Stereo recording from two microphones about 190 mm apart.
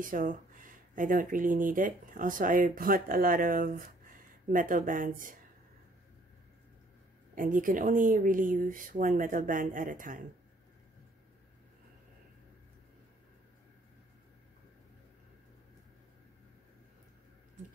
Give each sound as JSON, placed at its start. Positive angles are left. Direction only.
{"t": 0.0, "sound": "speech", "side_deg": -45}
{"t": 7.3, "sound": "speech", "side_deg": -45}